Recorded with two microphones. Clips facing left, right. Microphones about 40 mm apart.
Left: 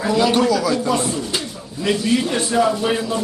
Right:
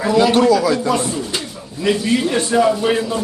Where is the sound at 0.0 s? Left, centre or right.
Centre.